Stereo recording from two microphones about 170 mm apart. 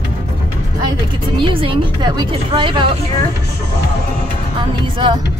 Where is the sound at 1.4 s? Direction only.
30° right (ahead or behind).